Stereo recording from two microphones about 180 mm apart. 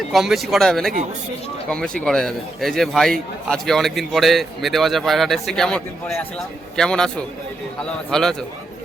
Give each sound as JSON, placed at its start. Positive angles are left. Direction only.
{"t": 0.1, "sound": "a man's voice", "side_deg": 0}
{"t": 2.0, "sound": "a man's voice", "side_deg": 5}